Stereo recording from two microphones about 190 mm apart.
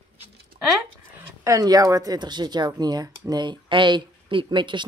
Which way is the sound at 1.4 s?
15° right (ahead or behind).